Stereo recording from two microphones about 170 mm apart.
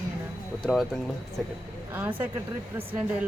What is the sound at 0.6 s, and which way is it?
Speech, centre (ahead or behind).